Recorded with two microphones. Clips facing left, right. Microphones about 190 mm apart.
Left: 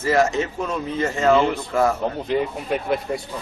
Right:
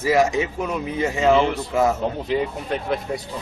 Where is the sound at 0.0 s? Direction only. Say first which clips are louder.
Right 1 dB; 15° right (ahead or behind).